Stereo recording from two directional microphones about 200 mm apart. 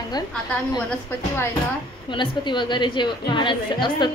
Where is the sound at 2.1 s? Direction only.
25° left (ahead or behind).